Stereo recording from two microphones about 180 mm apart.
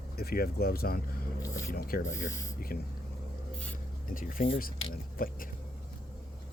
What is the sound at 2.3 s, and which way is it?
Speech, 15° left (ahead or behind).